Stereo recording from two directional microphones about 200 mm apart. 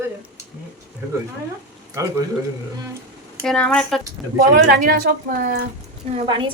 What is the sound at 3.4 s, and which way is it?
Speech, 5° left (ahead or behind).